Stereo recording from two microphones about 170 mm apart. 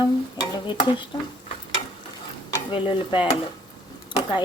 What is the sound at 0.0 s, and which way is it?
Stir, 30° left (ahead or behind).